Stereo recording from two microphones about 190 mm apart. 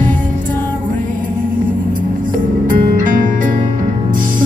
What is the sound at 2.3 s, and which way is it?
Music, 45° right (ahead or behind).